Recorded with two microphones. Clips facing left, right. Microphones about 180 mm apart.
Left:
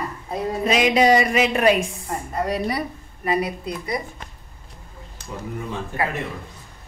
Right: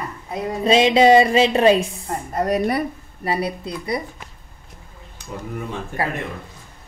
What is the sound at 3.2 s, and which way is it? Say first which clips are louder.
Speech: even; 30° right (ahead or behind).